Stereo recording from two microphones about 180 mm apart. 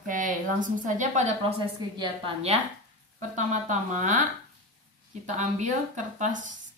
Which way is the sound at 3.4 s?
40° right (ahead or behind).